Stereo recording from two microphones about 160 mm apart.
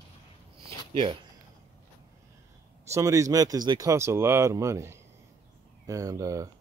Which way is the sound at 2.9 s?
20° right (ahead or behind).